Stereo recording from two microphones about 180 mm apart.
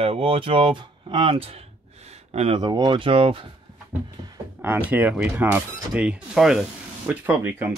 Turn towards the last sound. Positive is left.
turn(degrees=-10)  # may be behind; listen again after turning